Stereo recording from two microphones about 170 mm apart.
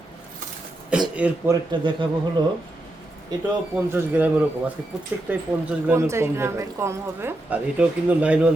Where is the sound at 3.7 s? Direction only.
10° right (ahead or behind).